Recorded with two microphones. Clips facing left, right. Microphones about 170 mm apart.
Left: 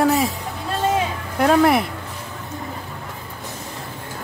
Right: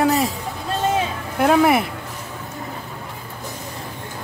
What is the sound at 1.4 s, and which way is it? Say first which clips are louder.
Speech: even; 5° right (ahead or behind).